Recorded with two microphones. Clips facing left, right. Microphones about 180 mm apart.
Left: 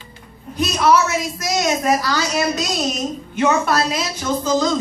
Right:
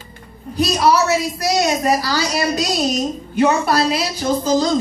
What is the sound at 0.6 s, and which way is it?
A woman's voice, 35° right (ahead or behind).